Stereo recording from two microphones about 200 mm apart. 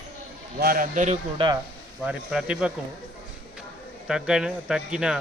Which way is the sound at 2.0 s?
5° right (ahead or behind).